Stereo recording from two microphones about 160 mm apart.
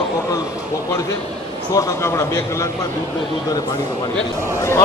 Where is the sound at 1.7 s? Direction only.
20° left (ahead or behind).